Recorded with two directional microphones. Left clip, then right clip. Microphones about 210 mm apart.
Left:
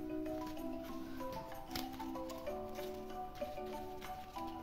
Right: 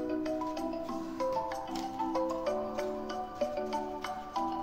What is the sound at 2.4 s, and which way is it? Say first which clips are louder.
Music: right 11 dB; 35° right (ahead or behind).